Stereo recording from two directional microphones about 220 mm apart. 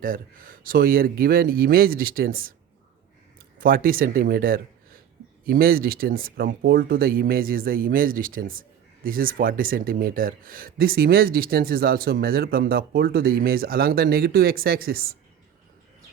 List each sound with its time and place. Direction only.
0.0 s speech: 40° right (ahead or behind)
3.6 s speech: 40° right (ahead or behind)